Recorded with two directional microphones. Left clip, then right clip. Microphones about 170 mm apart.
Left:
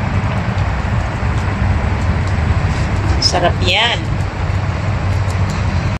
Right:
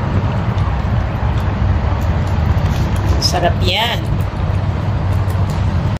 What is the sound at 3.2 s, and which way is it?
Speech, 5° left (ahead or behind).